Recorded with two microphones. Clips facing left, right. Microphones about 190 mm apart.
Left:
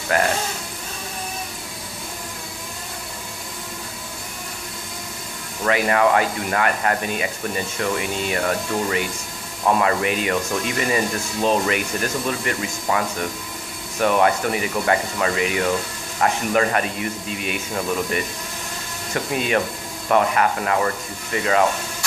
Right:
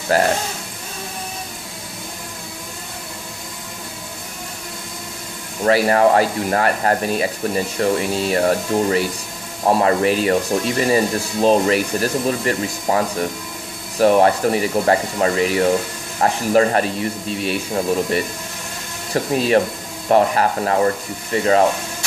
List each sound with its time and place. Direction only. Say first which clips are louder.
0.1 s speech: right 3 dB; 35° right (ahead or behind)
5.6 s speech: right 4 dB; 35° right (ahead or behind)